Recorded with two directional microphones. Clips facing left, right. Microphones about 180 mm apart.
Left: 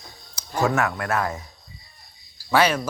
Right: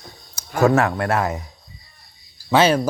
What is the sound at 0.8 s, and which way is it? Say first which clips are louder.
Speech: right 4 dB; 30° right (ahead or behind).